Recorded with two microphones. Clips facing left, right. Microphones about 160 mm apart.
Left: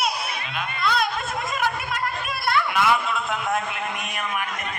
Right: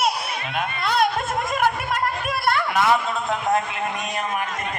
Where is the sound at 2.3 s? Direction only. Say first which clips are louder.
Right 1 dB; 45° right (ahead or behind).